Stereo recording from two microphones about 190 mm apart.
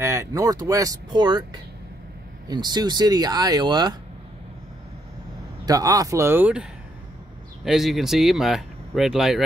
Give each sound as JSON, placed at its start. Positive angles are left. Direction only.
{"t": 0.0, "sound": "speech", "side_deg": -15}
{"t": 5.7, "sound": "speech", "side_deg": -20}